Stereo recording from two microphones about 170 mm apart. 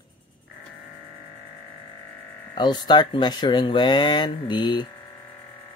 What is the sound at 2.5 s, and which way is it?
Speech, 25° left (ahead or behind).